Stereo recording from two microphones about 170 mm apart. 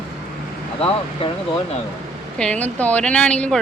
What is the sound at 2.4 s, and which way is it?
A woman's voice, 10° left (ahead or behind).